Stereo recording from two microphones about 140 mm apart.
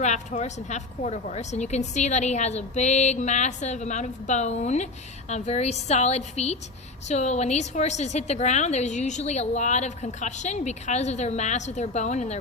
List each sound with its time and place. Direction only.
0.0 s a woman's voice: 55° left (ahead or behind)